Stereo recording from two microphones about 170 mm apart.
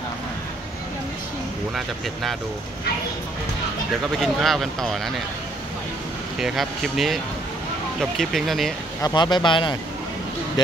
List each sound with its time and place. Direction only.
4.0 s speech: centre (ahead or behind)
6.4 s speech: centre (ahead or behind)
9.0 s speech: 25° left (ahead or behind)